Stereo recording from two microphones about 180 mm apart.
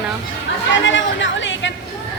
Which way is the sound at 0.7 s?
90° left.